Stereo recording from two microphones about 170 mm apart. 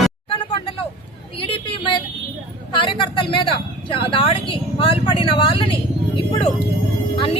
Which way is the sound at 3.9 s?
30° left (ahead or behind).